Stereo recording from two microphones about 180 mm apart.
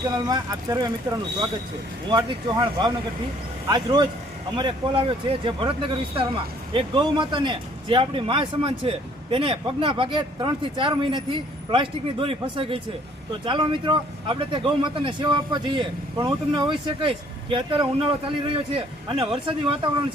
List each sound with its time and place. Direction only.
0.2 s speech: 20° right (ahead or behind)
2.0 s speech: 25° right (ahead or behind)